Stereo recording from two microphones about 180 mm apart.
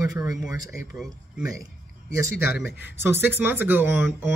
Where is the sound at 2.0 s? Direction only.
15° right (ahead or behind).